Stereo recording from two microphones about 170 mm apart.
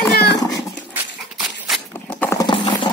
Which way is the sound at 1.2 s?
Centre (ahead or behind).